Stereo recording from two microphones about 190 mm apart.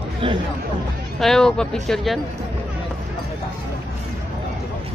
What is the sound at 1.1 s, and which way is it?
Speech, centre (ahead or behind).